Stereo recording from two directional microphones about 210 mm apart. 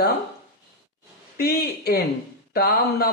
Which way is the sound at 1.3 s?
50° left (ahead or behind).